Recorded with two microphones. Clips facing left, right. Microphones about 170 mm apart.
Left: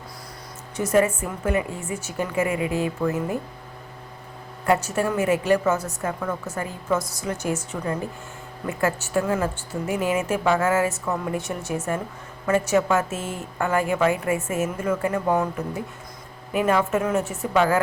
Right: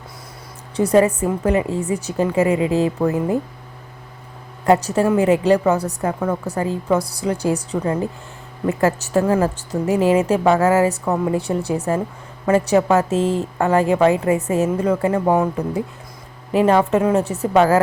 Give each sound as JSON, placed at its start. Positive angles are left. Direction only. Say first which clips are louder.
{"t": 0.8, "sound": "a woman's voice", "louder": "right 5 dB", "side_deg": -35}
{"t": 4.6, "sound": "a woman's voice", "louder": "right 6 dB", "side_deg": -35}
{"t": 5.0, "sound": "a woman's voice", "louder": "right 7 dB", "side_deg": -20}
{"t": 5.5, "sound": "a woman's voice", "louder": "right 5 dB", "side_deg": -35}